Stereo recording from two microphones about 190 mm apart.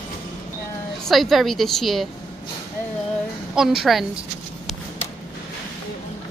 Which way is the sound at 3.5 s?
Centre (ahead or behind).